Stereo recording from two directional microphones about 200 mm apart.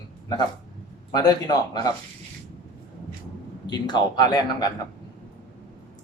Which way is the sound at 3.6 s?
20° left (ahead or behind).